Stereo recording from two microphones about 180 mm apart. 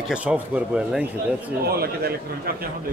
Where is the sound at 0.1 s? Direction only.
5° right (ahead or behind).